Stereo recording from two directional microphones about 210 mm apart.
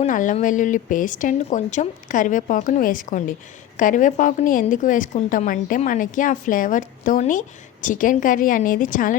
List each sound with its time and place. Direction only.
0.0 s a woman's voice: 40° left (ahead or behind)